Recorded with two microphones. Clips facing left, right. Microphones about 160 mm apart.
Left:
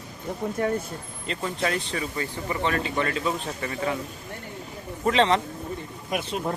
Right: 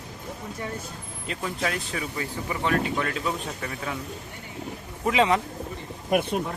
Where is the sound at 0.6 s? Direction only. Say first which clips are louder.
Left 9 dB; 55° left (ahead or behind).